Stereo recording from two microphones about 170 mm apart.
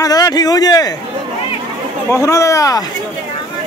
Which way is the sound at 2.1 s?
20° left (ahead or behind).